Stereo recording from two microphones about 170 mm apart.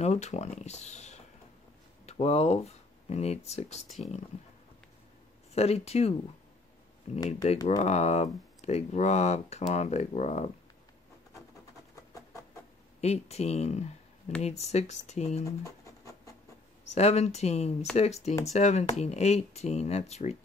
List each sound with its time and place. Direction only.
0.0 s speech: 40° left (ahead or behind)
5.5 s speech: 40° left (ahead or behind)
11.9 s a sound: 20° left (ahead or behind)
13.0 s speech: 40° left (ahead or behind)
15.6 s writing: 20° left (ahead or behind)
16.9 s speech: 40° left (ahead or behind)